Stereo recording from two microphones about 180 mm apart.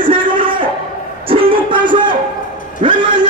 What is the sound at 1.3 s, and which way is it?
Music, 30° right (ahead or behind).